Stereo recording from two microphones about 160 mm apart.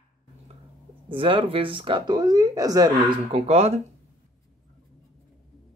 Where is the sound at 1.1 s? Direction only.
35° right (ahead or behind).